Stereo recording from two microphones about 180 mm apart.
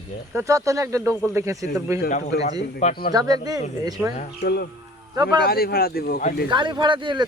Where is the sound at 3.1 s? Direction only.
20° right (ahead or behind).